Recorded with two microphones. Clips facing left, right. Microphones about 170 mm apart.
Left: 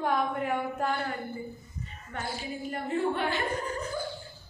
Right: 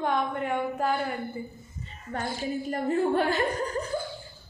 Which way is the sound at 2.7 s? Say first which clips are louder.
Right 4 dB; 40° right (ahead or behind).